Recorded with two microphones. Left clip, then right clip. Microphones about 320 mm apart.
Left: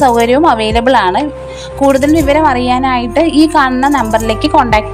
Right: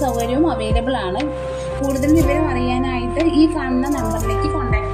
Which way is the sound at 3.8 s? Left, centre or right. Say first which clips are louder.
Left 11 dB; centre.